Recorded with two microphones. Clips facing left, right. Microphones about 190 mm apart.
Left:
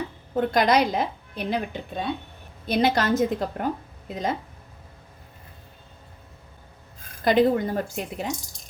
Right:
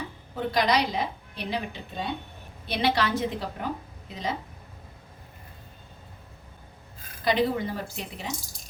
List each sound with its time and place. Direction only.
0.3 s a woman's voice: 50° left (ahead or behind)
7.3 s a woman's voice: 50° left (ahead or behind)